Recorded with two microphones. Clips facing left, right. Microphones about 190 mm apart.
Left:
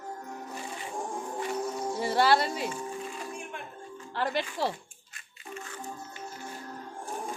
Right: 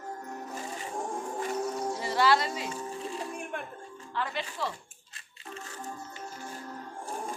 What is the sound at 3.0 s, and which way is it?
Music, 30° right (ahead or behind).